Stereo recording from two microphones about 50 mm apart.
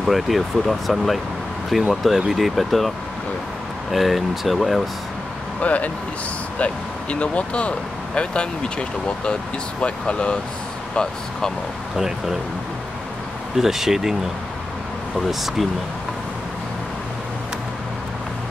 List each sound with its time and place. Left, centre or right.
0.0 s speech: centre
3.9 s speech: centre
5.6 s speech: left
13.6 s speech: centre
15.1 s speech: centre